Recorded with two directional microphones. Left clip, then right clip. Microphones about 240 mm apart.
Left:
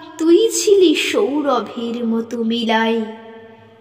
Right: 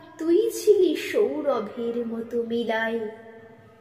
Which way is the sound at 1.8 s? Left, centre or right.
Left.